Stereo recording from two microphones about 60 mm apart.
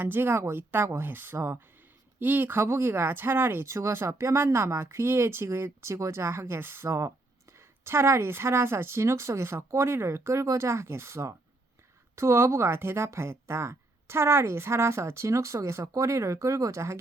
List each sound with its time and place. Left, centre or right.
0.0 s speech: right
6.8 s speech: right
7.5 s speech: right